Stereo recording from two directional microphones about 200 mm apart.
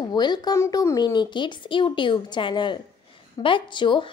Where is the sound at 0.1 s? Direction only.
20° left (ahead or behind).